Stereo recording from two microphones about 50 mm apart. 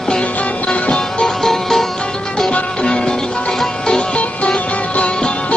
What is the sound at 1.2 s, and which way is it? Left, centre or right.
Music, centre.